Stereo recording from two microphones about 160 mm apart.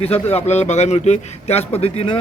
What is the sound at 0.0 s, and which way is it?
A man's voice, 40° left (ahead or behind).